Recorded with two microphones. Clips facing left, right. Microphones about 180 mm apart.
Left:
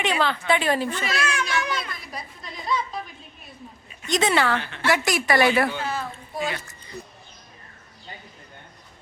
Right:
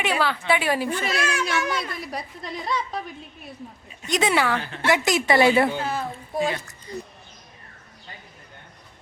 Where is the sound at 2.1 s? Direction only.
70° right (ahead or behind).